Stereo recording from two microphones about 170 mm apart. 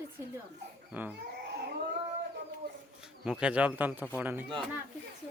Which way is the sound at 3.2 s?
5° right (ahead or behind).